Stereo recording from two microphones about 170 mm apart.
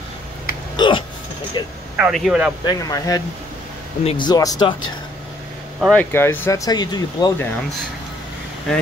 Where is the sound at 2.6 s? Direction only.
20° left (ahead or behind).